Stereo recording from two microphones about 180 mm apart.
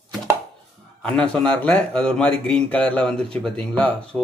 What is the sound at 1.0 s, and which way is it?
Speech, 5° left (ahead or behind).